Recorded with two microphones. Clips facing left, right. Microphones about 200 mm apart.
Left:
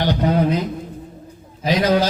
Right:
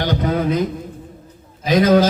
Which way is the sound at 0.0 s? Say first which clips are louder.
Left 1 dB; 45° right (ahead or behind).